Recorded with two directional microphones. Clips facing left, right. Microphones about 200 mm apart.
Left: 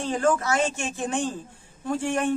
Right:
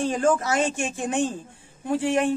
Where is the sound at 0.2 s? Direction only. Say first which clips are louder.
Left 1 dB; 15° right (ahead or behind).